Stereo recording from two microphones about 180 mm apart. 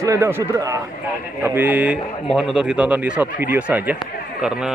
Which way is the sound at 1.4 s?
10° right (ahead or behind).